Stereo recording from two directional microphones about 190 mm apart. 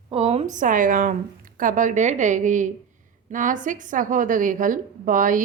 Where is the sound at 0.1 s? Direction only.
30° right (ahead or behind).